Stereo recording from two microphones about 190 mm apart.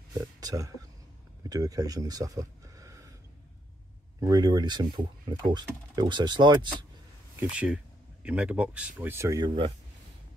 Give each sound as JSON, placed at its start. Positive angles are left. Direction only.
{"t": 0.4, "sound": "speech", "side_deg": -20}
{"t": 4.2, "sound": "speech", "side_deg": -20}
{"t": 7.3, "sound": "speech", "side_deg": -5}